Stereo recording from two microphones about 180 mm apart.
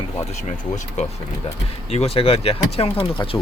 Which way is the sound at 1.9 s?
35° left (ahead or behind).